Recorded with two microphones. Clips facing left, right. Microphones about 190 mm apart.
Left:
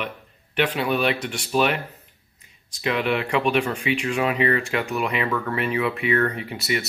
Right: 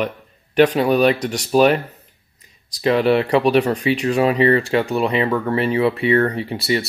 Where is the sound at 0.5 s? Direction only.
40° right (ahead or behind).